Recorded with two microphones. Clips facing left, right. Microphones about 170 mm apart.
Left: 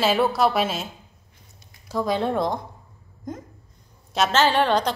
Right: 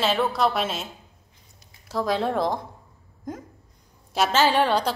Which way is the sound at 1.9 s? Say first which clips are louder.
Left 1 dB; centre (ahead or behind).